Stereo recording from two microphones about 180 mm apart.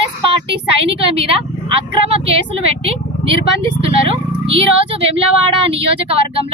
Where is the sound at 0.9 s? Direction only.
30° right (ahead or behind).